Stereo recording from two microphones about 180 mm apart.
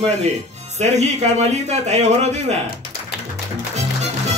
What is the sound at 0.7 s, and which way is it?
A man's voice, 40° right (ahead or behind).